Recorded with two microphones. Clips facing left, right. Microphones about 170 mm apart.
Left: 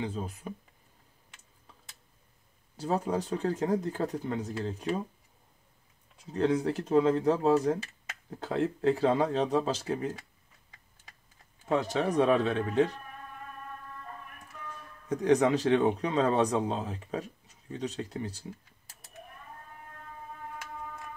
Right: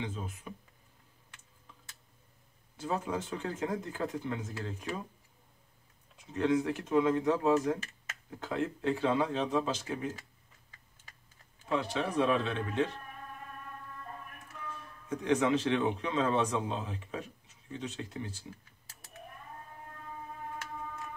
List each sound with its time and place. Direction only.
0.0 s a man's voice: 35° left (ahead or behind)
2.8 s a man's voice: 35° left (ahead or behind)
6.1 s a man's voice: 35° left (ahead or behind)
11.7 s a man's voice: 40° left (ahead or behind)
15.0 s a man's voice: 40° left (ahead or behind)